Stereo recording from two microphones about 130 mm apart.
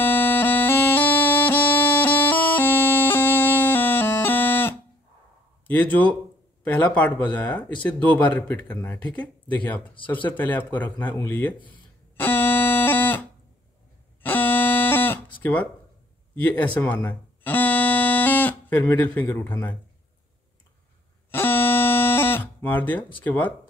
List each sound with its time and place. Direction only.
0.0 s bagpipes: 15° left (ahead or behind)
5.7 s speech: 10° left (ahead or behind)
12.2 s a sound: 15° left (ahead or behind)
14.2 s buzzer: 15° left (ahead or behind)
15.4 s speech: 10° left (ahead or behind)
21.3 s music: 15° left (ahead or behind)
23.1 s speech: 15° left (ahead or behind)